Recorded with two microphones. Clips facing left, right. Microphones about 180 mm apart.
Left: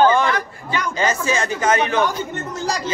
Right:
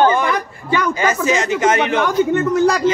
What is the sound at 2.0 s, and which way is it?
Speech, 60° right (ahead or behind).